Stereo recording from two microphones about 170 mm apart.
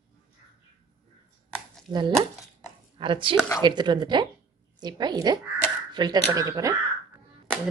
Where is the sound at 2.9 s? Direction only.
30° right (ahead or behind).